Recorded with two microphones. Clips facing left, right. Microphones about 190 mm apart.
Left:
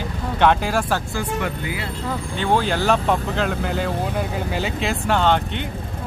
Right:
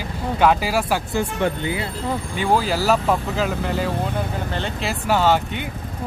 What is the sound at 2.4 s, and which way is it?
Speech, 5° right (ahead or behind).